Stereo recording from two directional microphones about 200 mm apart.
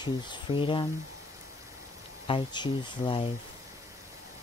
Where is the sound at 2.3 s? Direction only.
25° left (ahead or behind).